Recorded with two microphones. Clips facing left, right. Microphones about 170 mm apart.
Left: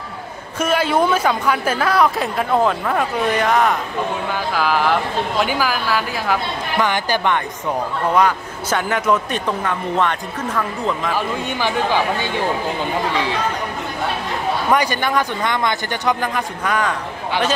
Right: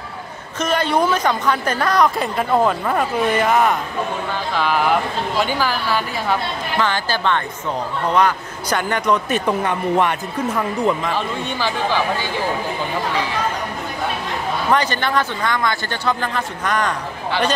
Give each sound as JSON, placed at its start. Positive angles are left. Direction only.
{"t": 0.6, "sound": "a woman's voice", "side_deg": 5}
{"t": 9.5, "sound": "speech", "side_deg": -15}
{"t": 11.6, "sound": "speech", "side_deg": 15}
{"t": 14.7, "sound": "speech", "side_deg": 10}